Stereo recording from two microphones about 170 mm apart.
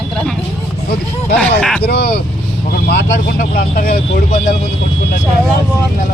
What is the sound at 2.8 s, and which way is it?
Speech, 80° left.